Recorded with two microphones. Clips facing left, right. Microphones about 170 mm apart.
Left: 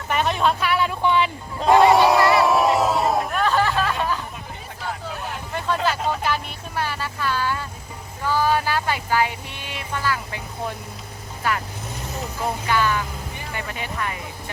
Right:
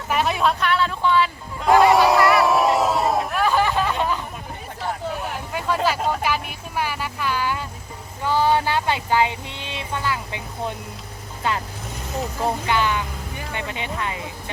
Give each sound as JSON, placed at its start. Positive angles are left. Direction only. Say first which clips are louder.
{"t": 0.1, "sound": "a sound", "louder": "even", "side_deg": -5}
{"t": 0.6, "sound": "a sound", "louder": "even", "side_deg": 10}
{"t": 1.7, "sound": "crowd", "louder": "even", "side_deg": 0}
{"t": 5.5, "sound": "vehicle", "louder": "right 1 dB", "side_deg": -10}
{"t": 8.2, "sound": "speech", "louder": "right 2 dB", "side_deg": -20}
{"t": 12.6, "sound": "speech", "louder": "even", "side_deg": -20}